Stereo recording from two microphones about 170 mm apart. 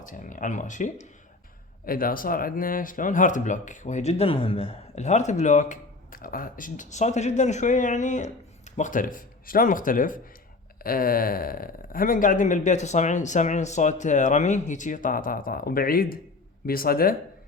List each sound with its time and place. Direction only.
0.0 s speech: 50° left (ahead or behind)
1.8 s speech: 55° left (ahead or behind)